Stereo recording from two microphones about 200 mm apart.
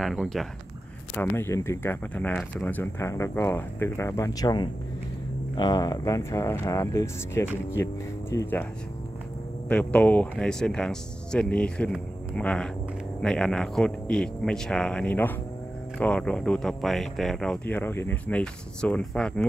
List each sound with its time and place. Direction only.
0.0 s speech: centre (ahead or behind)
1.1 s speech: 10° left (ahead or behind)
9.7 s speech: 5° left (ahead or behind)